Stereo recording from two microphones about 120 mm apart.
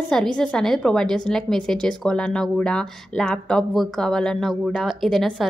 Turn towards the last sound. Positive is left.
turn(degrees=0)  # may be behind; listen again after turning